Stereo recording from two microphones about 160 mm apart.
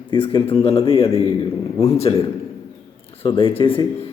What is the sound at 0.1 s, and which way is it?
A man's voice, 30° left (ahead or behind).